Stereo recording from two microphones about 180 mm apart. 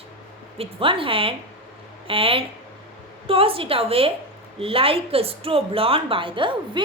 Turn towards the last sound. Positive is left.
turn(degrees=-25)  # may be behind; listen again after turning